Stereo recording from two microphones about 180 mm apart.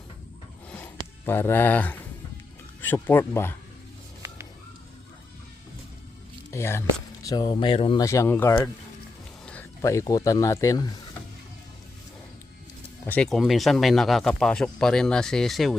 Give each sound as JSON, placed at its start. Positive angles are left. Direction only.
{"t": 1.2, "sound": "speech", "side_deg": 10}
{"t": 6.5, "sound": "speech", "side_deg": 15}
{"t": 7.3, "sound": "speech", "side_deg": 25}
{"t": 8.0, "sound": "speech", "side_deg": 15}
{"t": 13.1, "sound": "speech", "side_deg": 5}